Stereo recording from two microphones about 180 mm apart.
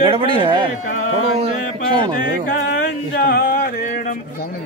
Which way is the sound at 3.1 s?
60° left (ahead or behind).